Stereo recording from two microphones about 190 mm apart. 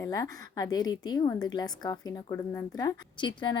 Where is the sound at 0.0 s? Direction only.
20° left (ahead or behind).